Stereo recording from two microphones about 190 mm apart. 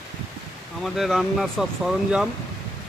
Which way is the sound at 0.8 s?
Centre (ahead or behind).